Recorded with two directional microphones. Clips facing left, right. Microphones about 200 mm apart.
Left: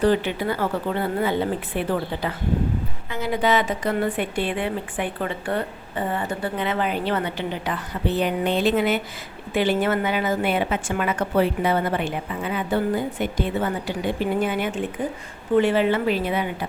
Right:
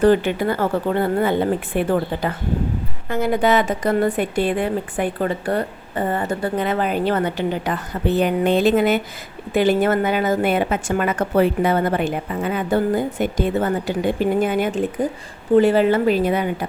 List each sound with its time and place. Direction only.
0.0 s a woman's voice: 50° right (ahead or behind)